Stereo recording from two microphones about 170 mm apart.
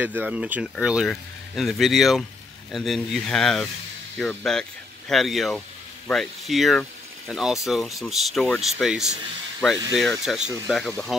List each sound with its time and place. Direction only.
0.0 s speech: 10° right (ahead or behind)